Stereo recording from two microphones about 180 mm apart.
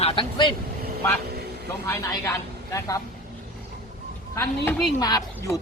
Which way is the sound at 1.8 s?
15° left (ahead or behind).